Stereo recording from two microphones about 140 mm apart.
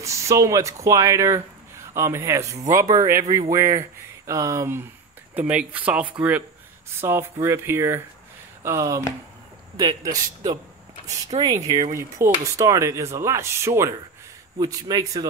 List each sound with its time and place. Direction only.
0.0 s speech: 20° right (ahead or behind)
5.3 s speech: 10° right (ahead or behind); by 15.2 s 25° right (ahead or behind)